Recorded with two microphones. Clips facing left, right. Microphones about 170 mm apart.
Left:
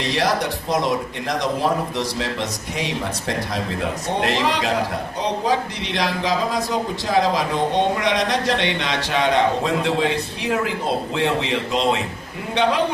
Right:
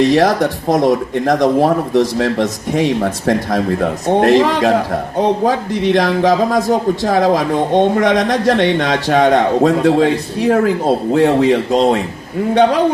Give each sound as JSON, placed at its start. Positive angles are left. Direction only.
{"t": 0.1, "sound": "speech", "side_deg": -50}